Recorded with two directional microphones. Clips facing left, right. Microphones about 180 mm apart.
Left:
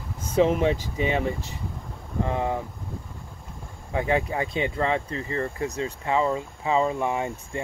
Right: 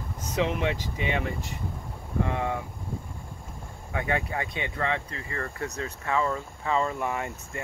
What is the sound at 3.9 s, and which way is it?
Speech, 25° left (ahead or behind).